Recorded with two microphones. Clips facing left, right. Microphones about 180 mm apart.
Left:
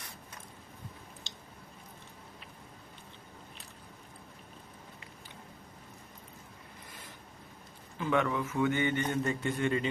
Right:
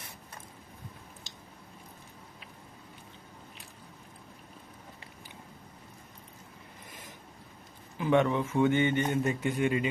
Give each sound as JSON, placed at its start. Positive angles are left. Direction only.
{"t": 7.9, "sound": "a man's voice", "side_deg": -20}